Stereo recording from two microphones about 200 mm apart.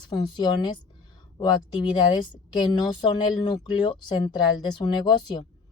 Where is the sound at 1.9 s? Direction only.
20° left (ahead or behind).